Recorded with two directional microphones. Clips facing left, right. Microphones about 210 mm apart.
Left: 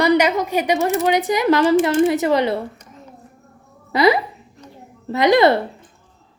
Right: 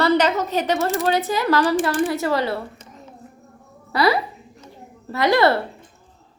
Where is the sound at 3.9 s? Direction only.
20° left (ahead or behind).